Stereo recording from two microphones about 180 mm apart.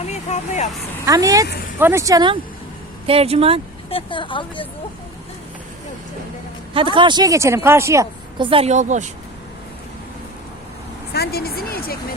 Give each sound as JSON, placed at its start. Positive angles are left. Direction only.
{"t": 0.0, "sound": "speech", "side_deg": 40}
{"t": 1.0, "sound": "a woman's voice", "side_deg": -20}
{"t": 3.8, "sound": "speech", "side_deg": 30}
{"t": 6.7, "sound": "speech", "side_deg": -30}
{"t": 8.4, "sound": "a woman's voice", "side_deg": -30}
{"t": 11.1, "sound": "vehicle", "side_deg": 60}